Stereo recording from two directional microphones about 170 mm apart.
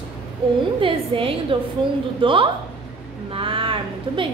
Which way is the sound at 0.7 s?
30° right (ahead or behind).